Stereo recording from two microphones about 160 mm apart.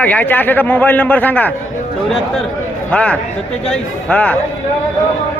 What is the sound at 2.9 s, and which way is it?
A man's voice, 10° left (ahead or behind).